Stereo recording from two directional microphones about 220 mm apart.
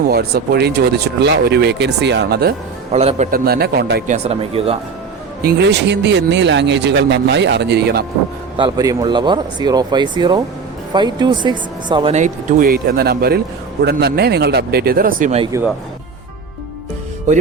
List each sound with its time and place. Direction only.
0.1 s speech: 45° right (ahead or behind)
2.9 s speech: 30° right (ahead or behind)
3.3 s speech: 45° right (ahead or behind); by 4.8 s 25° right (ahead or behind)
5.4 s speech: 45° right (ahead or behind)
8.5 s speech: 20° right (ahead or behind)
12.1 s speech: 35° right (ahead or behind)